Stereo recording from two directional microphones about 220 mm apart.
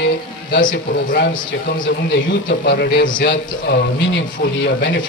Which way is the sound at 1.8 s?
55° left (ahead or behind).